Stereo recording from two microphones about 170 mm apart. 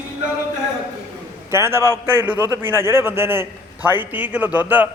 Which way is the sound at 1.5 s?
15° right (ahead or behind).